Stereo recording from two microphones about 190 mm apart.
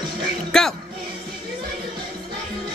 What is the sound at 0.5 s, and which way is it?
Music, centre (ahead or behind).